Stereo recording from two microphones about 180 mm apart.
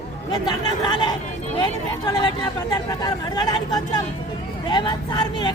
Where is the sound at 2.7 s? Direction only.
20° left (ahead or behind).